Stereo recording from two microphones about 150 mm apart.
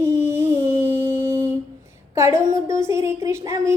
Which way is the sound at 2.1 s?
20° right (ahead or behind).